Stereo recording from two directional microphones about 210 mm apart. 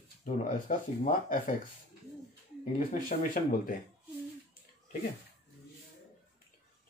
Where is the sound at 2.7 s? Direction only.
40° left (ahead or behind).